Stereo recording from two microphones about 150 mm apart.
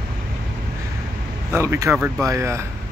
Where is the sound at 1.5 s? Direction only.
20° right (ahead or behind).